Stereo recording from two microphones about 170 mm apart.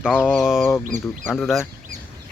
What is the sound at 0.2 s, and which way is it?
Speech, centre (ahead or behind).